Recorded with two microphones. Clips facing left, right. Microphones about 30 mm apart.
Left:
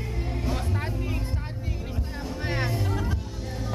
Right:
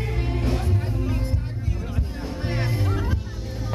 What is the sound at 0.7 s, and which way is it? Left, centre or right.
Music, centre.